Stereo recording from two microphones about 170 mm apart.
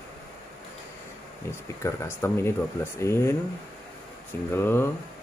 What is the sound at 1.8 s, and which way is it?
Speech, 15° left (ahead or behind).